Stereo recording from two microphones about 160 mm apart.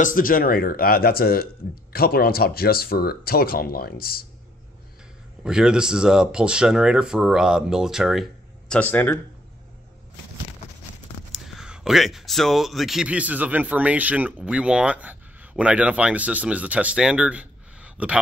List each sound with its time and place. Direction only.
0.0 s speech: 60° left (ahead or behind)
5.4 s speech: 5° right (ahead or behind); by 9.2 s 10° left (ahead or behind)
11.3 s speech: centre (ahead or behind)